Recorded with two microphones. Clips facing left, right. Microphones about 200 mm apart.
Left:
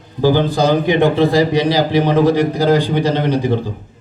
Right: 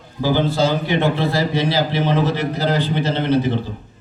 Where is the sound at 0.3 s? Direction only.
15° left (ahead or behind).